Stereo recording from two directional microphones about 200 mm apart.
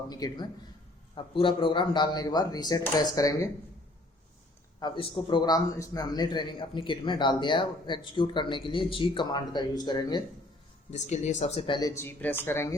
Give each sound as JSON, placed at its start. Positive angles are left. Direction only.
{"t": 0.1, "sound": "a man's voice", "side_deg": 20}
{"t": 4.8, "sound": "a man's voice", "side_deg": 25}
{"t": 10.9, "sound": "a man's voice", "side_deg": 35}